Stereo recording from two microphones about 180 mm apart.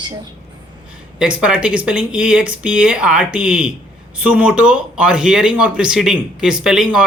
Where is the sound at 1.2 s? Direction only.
5° right (ahead or behind).